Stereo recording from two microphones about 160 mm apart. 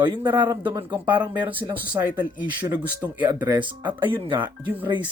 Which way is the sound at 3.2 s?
15° right (ahead or behind).